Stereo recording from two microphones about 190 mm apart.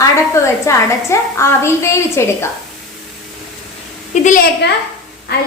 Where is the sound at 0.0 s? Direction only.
15° left (ahead or behind).